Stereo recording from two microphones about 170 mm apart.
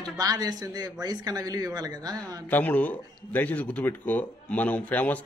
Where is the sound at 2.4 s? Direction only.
10° left (ahead or behind).